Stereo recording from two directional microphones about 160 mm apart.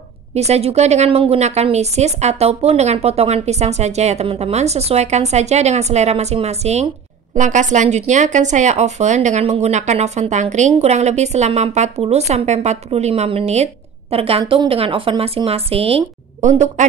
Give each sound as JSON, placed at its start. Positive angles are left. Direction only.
{"t": 0.3, "sound": "a woman's voice", "side_deg": -40}